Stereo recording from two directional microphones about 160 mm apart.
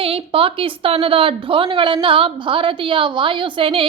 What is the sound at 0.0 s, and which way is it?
A woman's voice, 35° right (ahead or behind).